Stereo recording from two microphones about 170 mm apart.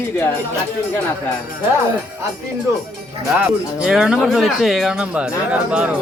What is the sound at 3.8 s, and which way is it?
Speech, 5° right (ahead or behind).